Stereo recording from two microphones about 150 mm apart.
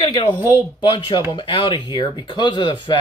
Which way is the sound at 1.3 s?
30° left (ahead or behind).